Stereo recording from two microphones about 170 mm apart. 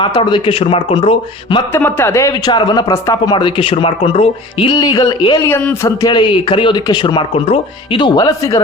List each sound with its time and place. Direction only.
0.0 s a man's voice: 30° left (ahead or behind)
1.7 s speech: 15° left (ahead or behind)
5.5 s speech: 10° left (ahead or behind)